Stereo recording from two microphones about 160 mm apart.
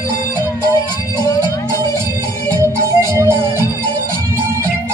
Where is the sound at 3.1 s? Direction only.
15° right (ahead or behind).